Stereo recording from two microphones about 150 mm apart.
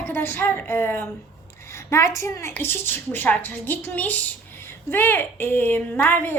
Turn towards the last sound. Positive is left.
turn(degrees=15)  # may be behind; listen again after turning